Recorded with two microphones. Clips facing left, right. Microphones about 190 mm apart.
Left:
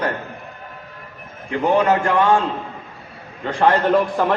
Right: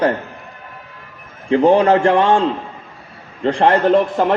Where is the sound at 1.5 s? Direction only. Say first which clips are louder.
Right 5 dB; 30° right (ahead or behind).